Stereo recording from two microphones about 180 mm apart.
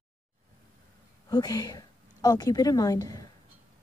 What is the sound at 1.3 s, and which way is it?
A woman's voice, 20° left (ahead or behind).